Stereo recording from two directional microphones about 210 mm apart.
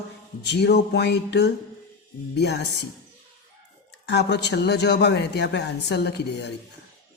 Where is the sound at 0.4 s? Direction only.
50° left (ahead or behind).